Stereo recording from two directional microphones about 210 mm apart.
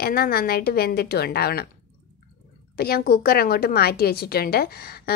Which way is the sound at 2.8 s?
45° left (ahead or behind).